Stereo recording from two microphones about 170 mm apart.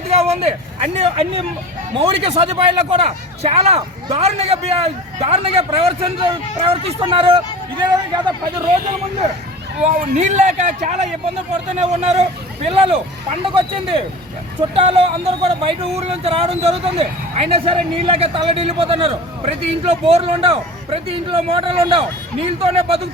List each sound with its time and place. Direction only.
0.1 s vehicle: 35° right (ahead or behind)
0.9 s speech: 35° right (ahead or behind)
9.8 s speech: 45° right (ahead or behind)
14.8 s speech: 40° right (ahead or behind)